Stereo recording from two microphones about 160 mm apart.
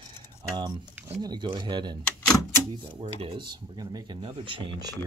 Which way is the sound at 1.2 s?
25° right (ahead or behind).